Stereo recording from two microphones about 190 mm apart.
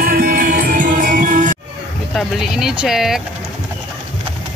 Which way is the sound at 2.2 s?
Centre (ahead or behind).